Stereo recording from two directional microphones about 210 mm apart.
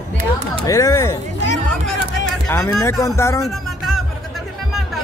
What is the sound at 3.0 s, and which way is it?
Music, 15° left (ahead or behind).